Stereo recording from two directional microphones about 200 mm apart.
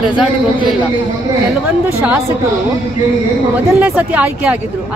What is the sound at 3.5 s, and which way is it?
Speech, 10° right (ahead or behind).